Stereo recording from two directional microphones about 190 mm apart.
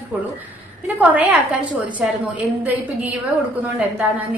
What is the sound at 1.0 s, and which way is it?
Speech, 5° right (ahead or behind).